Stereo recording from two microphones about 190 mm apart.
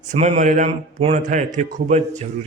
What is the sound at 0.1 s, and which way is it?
A man's voice, 40° right (ahead or behind).